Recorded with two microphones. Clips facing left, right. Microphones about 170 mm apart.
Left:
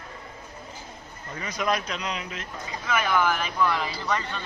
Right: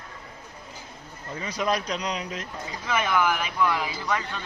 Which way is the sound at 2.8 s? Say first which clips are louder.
Even; 25° right (ahead or behind).